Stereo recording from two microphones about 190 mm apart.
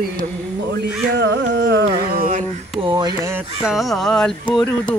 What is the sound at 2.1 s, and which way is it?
Mantra, 50° right (ahead or behind).